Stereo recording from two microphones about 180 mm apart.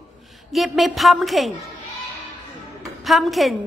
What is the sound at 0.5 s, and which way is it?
Speech, centre (ahead or behind).